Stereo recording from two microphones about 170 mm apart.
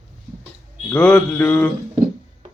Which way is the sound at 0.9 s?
5° left (ahead or behind).